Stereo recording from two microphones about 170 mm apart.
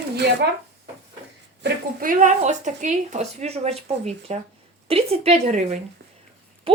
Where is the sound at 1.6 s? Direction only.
55° right (ahead or behind).